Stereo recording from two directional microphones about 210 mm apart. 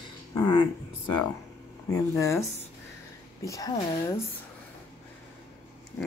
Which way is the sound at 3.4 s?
15° left (ahead or behind).